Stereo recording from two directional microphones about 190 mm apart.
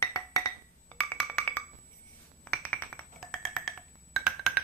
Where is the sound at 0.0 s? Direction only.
15° left (ahead or behind).